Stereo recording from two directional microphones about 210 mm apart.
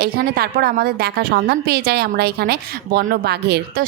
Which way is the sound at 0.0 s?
45° right (ahead or behind).